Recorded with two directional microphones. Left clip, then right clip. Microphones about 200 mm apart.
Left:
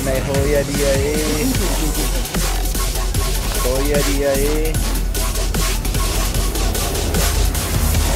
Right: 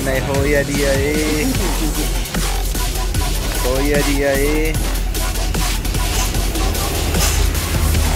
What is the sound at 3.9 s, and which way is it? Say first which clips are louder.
Speech: right 1 dB; centre (ahead or behind).